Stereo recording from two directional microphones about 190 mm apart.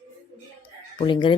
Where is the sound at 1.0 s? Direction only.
25° left (ahead or behind).